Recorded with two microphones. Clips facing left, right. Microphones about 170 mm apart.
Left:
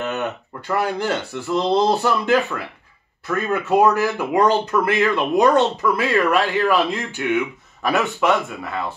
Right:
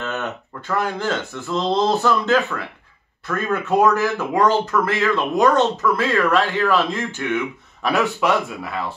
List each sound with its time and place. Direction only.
0.0 s speech: 10° left (ahead or behind)
7.8 s speech: centre (ahead or behind)